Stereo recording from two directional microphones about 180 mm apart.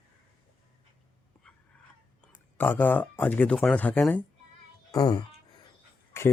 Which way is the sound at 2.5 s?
10° left (ahead or behind).